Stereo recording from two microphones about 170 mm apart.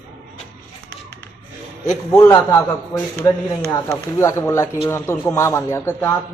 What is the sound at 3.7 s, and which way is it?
Speech, 15° left (ahead or behind).